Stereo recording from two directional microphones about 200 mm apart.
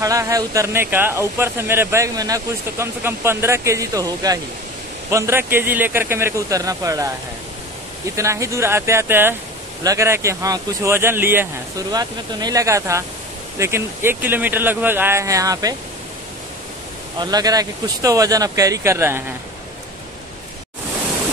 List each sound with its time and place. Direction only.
0.0 s speech: 15° right (ahead or behind)
8.2 s speech: 15° right (ahead or behind)
17.2 s speech: 20° right (ahead or behind)